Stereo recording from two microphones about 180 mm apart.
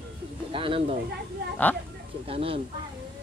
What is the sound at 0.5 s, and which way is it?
Speech, 30° right (ahead or behind).